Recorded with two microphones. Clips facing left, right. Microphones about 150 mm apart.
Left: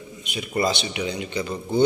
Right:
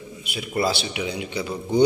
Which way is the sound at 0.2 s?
5° right (ahead or behind).